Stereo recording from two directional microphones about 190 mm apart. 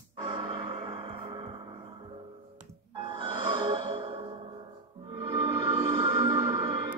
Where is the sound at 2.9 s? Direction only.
25° right (ahead or behind).